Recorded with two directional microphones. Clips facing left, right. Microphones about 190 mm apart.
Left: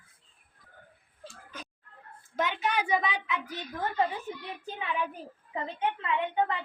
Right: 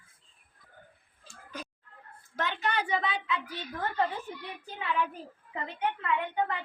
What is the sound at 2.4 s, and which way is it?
A woman's voice, 10° left (ahead or behind).